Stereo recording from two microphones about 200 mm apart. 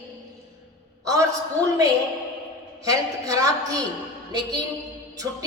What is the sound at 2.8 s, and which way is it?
Speech, 20° right (ahead or behind).